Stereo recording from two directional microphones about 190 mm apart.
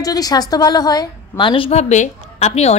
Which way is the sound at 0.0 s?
20° left (ahead or behind).